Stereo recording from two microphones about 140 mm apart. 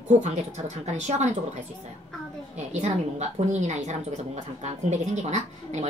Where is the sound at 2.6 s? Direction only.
55° right (ahead or behind).